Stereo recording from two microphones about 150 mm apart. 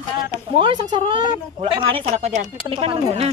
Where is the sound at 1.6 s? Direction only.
40° right (ahead or behind).